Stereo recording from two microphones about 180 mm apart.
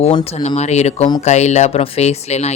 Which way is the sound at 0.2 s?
25° left (ahead or behind).